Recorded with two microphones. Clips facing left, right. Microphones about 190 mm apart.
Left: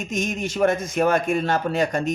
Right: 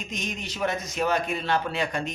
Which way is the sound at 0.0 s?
45° left (ahead or behind).